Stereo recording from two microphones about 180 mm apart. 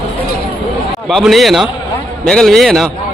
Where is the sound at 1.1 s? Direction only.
Centre (ahead or behind).